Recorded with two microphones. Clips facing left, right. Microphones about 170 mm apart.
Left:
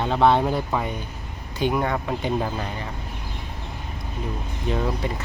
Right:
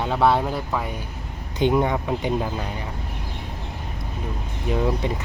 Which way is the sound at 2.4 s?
5° right (ahead or behind).